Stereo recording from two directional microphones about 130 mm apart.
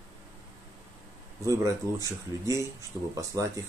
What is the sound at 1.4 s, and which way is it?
Speech, 25° right (ahead or behind).